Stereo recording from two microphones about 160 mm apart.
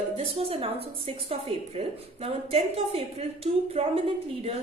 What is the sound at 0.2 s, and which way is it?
A woman's voice, 35° right (ahead or behind).